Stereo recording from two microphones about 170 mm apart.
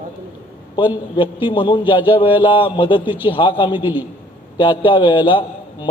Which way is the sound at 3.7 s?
10° right (ahead or behind).